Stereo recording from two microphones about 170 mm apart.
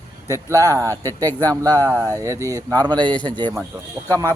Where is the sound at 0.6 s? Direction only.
20° right (ahead or behind).